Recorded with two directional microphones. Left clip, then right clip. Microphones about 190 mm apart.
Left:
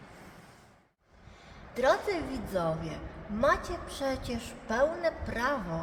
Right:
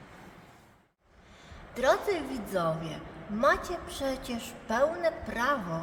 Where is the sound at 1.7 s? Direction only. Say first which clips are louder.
Right 1 dB; centre (ahead or behind).